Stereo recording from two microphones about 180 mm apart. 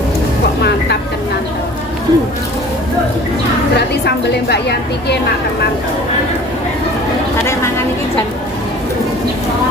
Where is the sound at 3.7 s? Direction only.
65° left (ahead or behind).